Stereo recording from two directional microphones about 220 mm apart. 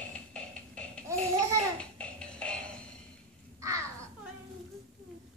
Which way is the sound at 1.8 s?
5° left (ahead or behind).